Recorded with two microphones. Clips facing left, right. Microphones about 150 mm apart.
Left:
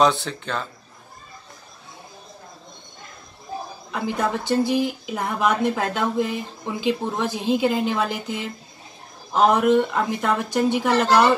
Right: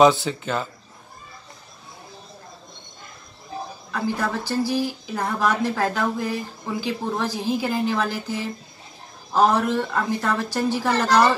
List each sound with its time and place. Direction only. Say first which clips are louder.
0.0 s speech: right 3 dB; centre (ahead or behind)
3.9 s speech: left 1 dB; 20° left (ahead or behind)